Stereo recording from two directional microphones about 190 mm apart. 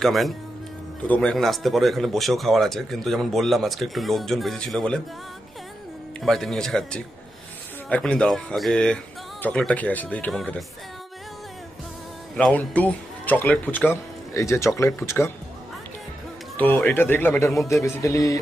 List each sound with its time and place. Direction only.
0.0 s speech: centre (ahead or behind)
6.2 s speech: centre (ahead or behind)
12.4 s a man's voice: 5° left (ahead or behind)
16.5 s a man's voice: 10° left (ahead or behind)